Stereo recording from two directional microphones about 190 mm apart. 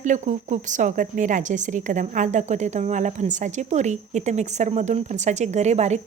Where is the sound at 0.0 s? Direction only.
40° right (ahead or behind).